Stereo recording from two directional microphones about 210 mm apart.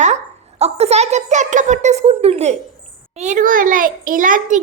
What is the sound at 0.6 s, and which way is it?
A child's voice, 30° right (ahead or behind).